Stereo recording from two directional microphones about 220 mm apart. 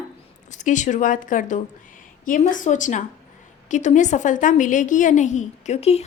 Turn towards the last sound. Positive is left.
turn(degrees=30)  # may be behind; listen again after turning